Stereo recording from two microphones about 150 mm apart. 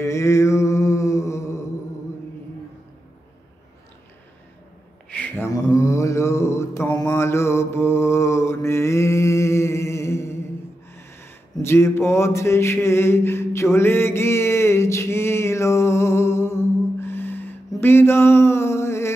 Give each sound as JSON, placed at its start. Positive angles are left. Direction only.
{"t": 0.0, "sound": "mantra", "side_deg": 20}
{"t": 5.1, "sound": "mantra", "side_deg": 10}
{"t": 11.0, "sound": "a sound", "side_deg": 15}